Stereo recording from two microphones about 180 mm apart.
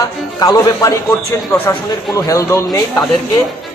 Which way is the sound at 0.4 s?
20° left (ahead or behind).